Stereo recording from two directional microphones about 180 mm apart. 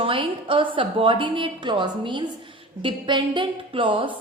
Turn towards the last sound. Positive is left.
turn(degrees=-30)  # may be behind; listen again after turning